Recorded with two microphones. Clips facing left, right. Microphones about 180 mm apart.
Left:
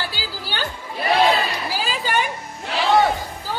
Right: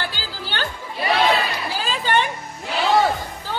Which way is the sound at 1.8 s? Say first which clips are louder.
Right 3 dB; 10° left (ahead or behind).